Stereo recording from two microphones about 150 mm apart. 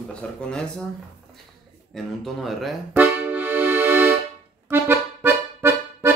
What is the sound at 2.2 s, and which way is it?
Speech, centre (ahead or behind).